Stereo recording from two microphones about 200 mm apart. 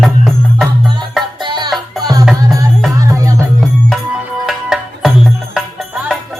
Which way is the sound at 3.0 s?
15° right (ahead or behind).